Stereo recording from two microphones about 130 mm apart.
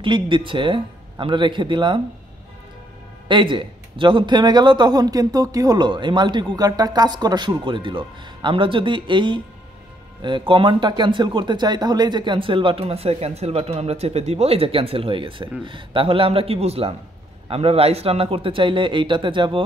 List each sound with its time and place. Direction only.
0.0 s a man's voice: 40° right (ahead or behind)
3.3 s a man's voice: 40° right (ahead or behind)